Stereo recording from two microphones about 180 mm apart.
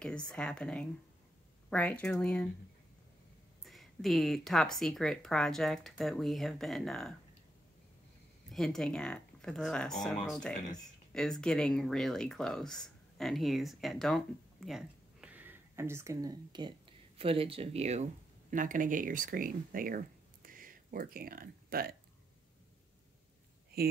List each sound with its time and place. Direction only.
0.0 s speech: 5° left (ahead or behind)
3.6 s speech: centre (ahead or behind)
8.5 s speech: centre (ahead or behind); by 18.0 s 35° right (ahead or behind)
18.5 s speech: 45° right (ahead or behind)
20.4 s a sound: 50° right (ahead or behind)